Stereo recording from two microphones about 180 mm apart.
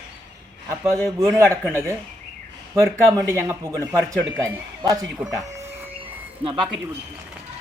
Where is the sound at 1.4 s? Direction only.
15° right (ahead or behind).